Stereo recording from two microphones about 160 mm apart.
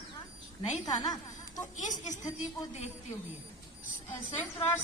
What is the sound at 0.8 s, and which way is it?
Speech, 25° left (ahead or behind).